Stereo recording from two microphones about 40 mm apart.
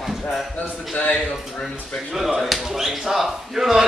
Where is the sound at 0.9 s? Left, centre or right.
Left.